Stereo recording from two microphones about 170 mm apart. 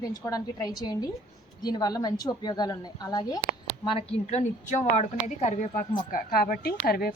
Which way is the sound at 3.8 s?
35° left (ahead or behind).